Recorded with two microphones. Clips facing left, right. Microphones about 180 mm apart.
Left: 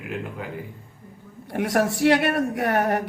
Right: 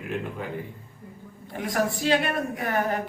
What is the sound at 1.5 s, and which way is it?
A woman's voice, 70° left (ahead or behind).